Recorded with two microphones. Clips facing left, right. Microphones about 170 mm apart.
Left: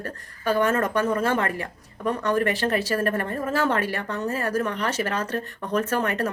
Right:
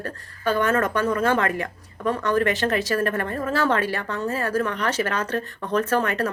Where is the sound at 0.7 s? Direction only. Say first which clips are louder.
Right 1 dB; 30° left (ahead or behind).